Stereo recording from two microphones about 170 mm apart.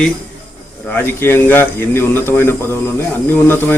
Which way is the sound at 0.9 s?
10° left (ahead or behind).